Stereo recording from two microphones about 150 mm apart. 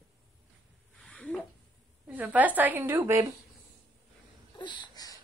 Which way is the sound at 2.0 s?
10° right (ahead or behind).